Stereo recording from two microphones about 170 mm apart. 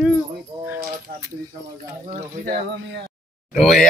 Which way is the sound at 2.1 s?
60° right (ahead or behind).